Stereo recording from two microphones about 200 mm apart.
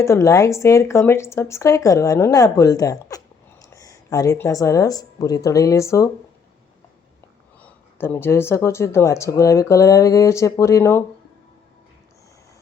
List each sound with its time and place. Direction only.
0.0 s speech: 15° left (ahead or behind)
7.6 s speech: 10° left (ahead or behind)